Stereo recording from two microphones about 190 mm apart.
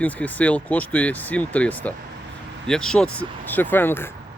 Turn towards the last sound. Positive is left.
turn(degrees=10)  # may be behind; listen again after turning